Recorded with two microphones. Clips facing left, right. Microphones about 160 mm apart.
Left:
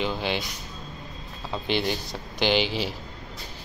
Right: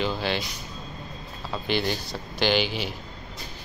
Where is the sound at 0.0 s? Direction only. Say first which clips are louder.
Right 1 dB; 15° left (ahead or behind).